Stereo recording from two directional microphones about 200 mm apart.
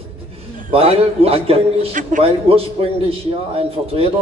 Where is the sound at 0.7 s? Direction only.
30° right (ahead or behind).